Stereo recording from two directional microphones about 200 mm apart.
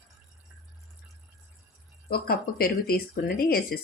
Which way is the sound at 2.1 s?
50° left (ahead or behind).